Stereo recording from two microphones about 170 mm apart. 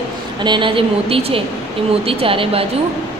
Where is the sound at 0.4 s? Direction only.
30° right (ahead or behind).